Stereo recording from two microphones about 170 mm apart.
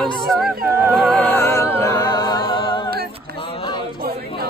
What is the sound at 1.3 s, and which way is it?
Music, 15° left (ahead or behind).